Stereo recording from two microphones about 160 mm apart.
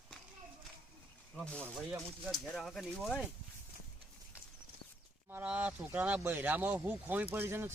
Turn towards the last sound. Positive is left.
turn(degrees=-15)  # may be behind; listen again after turning